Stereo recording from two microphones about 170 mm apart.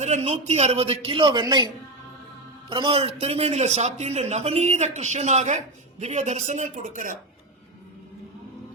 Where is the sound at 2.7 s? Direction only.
30° right (ahead or behind); by 7.1 s 50° right (ahead or behind).